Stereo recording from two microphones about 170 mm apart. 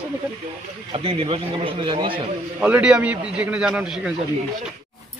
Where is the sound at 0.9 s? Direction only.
35° right (ahead or behind).